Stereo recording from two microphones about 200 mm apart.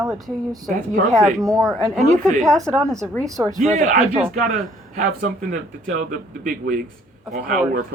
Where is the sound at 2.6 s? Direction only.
15° right (ahead or behind).